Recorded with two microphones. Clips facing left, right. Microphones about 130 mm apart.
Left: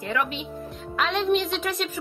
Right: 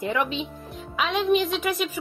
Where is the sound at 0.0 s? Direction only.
20° right (ahead or behind).